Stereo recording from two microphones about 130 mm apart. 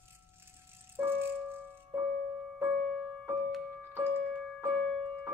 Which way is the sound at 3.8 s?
15° right (ahead or behind).